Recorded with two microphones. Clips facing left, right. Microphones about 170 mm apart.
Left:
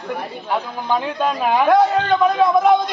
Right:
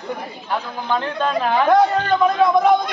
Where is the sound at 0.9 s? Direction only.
10° left (ahead or behind).